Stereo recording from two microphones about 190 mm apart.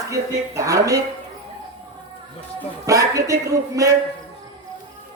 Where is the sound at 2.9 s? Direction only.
15° right (ahead or behind).